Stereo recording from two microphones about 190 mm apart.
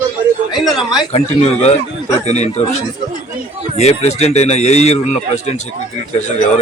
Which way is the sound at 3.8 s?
35° left (ahead or behind).